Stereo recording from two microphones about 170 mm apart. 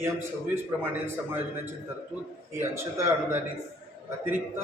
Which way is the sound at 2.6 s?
15° right (ahead or behind).